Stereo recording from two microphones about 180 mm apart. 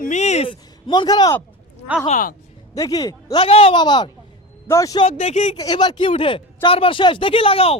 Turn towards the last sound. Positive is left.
turn(degrees=30)  # may be behind; listen again after turning